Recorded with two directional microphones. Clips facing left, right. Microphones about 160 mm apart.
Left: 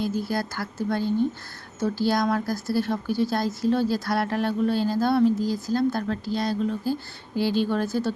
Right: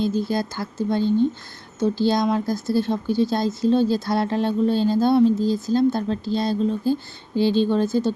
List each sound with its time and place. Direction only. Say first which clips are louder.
0.0 s speech: right 4 dB; 25° right (ahead or behind)